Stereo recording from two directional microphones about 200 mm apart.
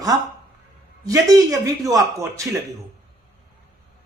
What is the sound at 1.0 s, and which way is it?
Speech, 15° right (ahead or behind).